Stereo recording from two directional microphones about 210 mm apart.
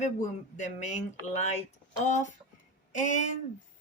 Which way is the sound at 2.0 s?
35° left (ahead or behind).